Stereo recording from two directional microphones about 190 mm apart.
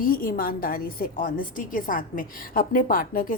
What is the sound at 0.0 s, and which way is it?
A woman's voice, 50° left (ahead or behind).